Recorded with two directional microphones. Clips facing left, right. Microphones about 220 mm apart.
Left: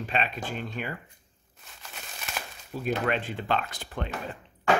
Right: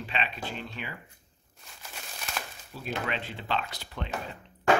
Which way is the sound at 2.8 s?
50° left (ahead or behind).